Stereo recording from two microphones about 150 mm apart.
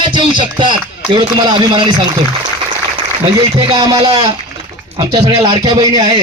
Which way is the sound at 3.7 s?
25° right (ahead or behind).